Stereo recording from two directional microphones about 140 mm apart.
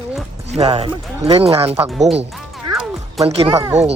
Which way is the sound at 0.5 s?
50° right (ahead or behind).